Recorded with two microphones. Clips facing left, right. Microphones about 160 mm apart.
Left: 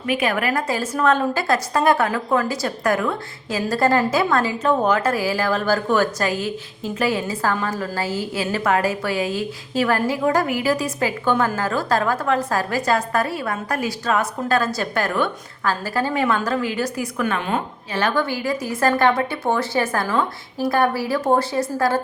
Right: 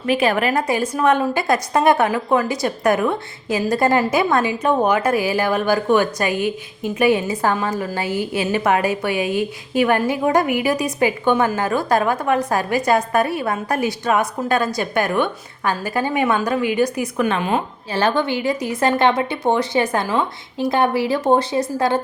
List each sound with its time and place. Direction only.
0.0 s a woman's voice: 30° right (ahead or behind)